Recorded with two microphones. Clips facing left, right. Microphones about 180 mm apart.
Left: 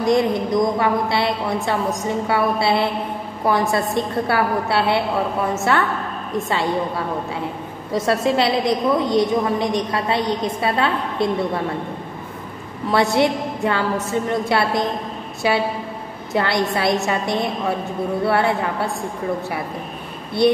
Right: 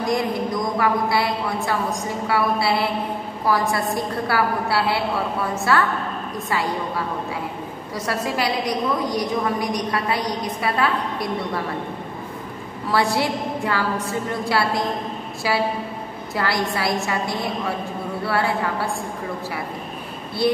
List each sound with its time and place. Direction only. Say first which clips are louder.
0.0 s a woman's voice: left 5 dB; 20° left (ahead or behind)
7.9 s a woman's voice: left 7 dB; 25° left (ahead or behind)
12.9 s a woman's voice: left 4 dB; 20° left (ahead or behind)
16.3 s a woman's voice: left 4 dB; 25° left (ahead or behind)